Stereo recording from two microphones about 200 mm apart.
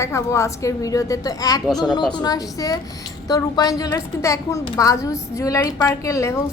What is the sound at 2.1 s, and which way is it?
A woman's voice, 20° left (ahead or behind).